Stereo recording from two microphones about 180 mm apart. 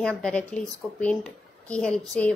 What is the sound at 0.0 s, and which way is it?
A woman's voice, 5° left (ahead or behind).